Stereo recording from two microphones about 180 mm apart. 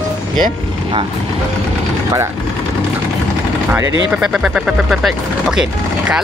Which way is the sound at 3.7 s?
10° right (ahead or behind).